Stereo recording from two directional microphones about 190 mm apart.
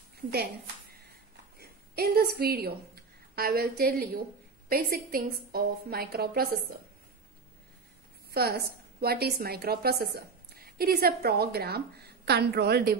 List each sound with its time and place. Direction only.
0.3 s a woman's voice: 55° right (ahead or behind)
8.3 s a woman's voice: 55° right (ahead or behind)